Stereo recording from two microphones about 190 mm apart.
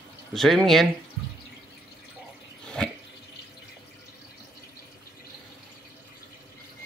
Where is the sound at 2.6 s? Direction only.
5° left (ahead or behind).